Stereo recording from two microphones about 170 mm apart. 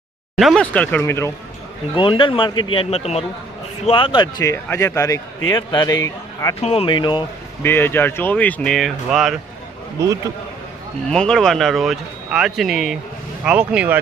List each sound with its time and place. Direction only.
0.3 s speech: centre (ahead or behind)
2.0 s a man's voice: 30° left (ahead or behind)
6.6 s a man's voice: 35° left (ahead or behind)
7.6 s speech: 15° left (ahead or behind)
11.1 s speech: 5° left (ahead or behind)